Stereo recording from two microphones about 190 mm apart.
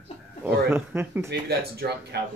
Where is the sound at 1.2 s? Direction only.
55° right (ahead or behind).